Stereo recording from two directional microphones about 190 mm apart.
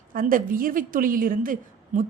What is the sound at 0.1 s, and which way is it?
A woman's voice, 45° right (ahead or behind).